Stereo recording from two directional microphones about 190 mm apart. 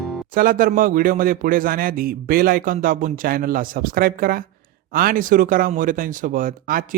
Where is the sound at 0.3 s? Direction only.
50° right (ahead or behind).